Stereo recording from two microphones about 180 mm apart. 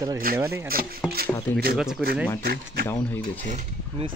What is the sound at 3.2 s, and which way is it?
Mechanisms, 45° right (ahead or behind).